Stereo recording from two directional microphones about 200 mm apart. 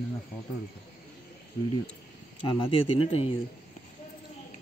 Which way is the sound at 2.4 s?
25° left (ahead or behind).